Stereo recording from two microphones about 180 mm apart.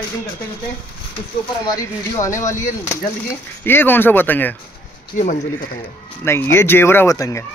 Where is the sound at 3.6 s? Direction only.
10° left (ahead or behind).